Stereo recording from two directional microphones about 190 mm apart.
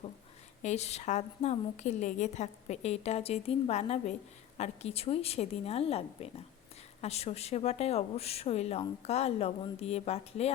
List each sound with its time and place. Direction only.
0.6 s a woman's voice: 35° left (ahead or behind)